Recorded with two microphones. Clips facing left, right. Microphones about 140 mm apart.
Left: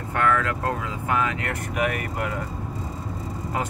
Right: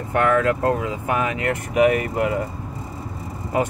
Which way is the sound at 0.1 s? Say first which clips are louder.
Right 5 dB; 25° right (ahead or behind).